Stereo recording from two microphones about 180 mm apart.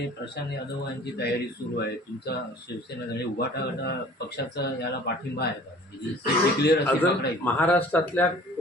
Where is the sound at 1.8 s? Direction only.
65° left (ahead or behind).